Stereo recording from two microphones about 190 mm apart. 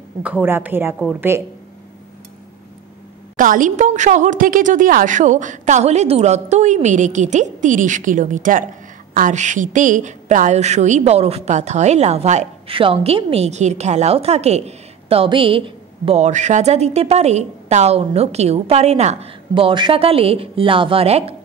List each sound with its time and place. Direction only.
0.2 s a woman's voice: 10° right (ahead or behind)
3.3 s a woman's voice: 45° right (ahead or behind)